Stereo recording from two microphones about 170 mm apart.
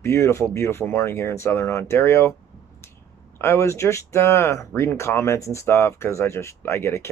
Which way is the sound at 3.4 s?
15° left (ahead or behind).